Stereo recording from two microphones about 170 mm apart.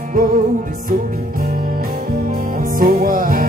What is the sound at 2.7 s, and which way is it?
Music, 55° right (ahead or behind).